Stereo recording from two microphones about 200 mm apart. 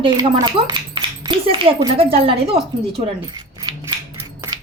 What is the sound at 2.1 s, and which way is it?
Speech, 30° right (ahead or behind).